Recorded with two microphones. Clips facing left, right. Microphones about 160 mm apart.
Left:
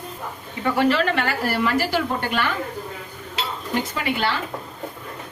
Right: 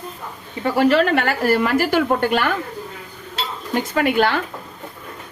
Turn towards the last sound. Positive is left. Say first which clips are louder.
# right 7 dB
turn(degrees=-50)  # may be behind; listen again after turning